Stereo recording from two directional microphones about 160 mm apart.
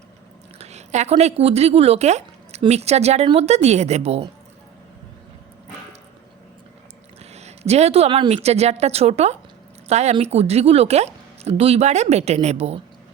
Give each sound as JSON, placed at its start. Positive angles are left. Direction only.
{"t": 0.6, "sound": "speech", "side_deg": -45}
{"t": 7.3, "sound": "speech", "side_deg": -40}